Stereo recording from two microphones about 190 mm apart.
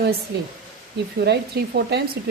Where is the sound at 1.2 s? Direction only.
60° right (ahead or behind).